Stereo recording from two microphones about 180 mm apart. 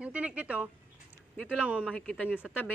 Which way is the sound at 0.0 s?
5° right (ahead or behind).